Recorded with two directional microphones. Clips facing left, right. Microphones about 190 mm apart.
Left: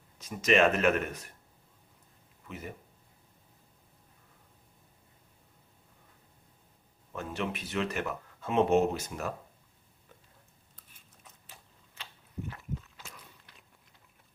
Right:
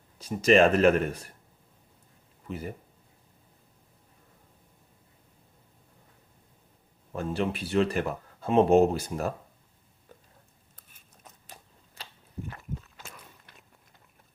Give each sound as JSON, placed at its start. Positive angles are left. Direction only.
{"t": 0.2, "sound": "speech", "side_deg": -30}
{"t": 2.5, "sound": "speech", "side_deg": -35}
{"t": 7.1, "sound": "speech", "side_deg": -35}
{"t": 11.2, "sound": "a sound", "side_deg": -40}